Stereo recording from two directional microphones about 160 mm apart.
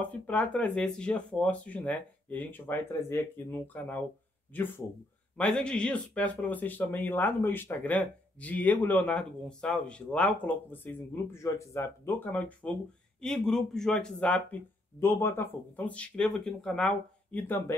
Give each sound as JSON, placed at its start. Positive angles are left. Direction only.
{"t": 0.0, "sound": "speech", "side_deg": 10}